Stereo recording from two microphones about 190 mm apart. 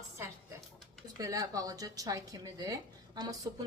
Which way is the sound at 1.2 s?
20° right (ahead or behind).